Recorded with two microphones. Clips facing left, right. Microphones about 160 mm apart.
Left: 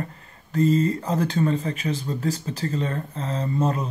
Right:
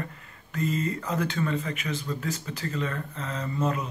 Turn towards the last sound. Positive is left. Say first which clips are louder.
# left 4 dB
turn(degrees=35)  # may be behind; listen again after turning